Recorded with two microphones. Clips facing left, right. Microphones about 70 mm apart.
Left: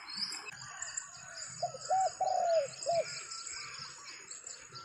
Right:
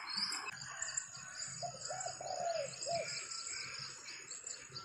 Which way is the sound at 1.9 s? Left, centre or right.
Left.